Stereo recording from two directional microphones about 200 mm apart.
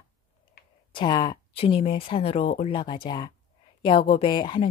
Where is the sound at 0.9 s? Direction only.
20° left (ahead or behind).